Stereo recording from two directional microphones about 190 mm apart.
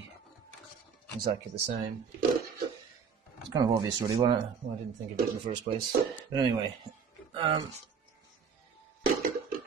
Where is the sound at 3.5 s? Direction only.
20° right (ahead or behind).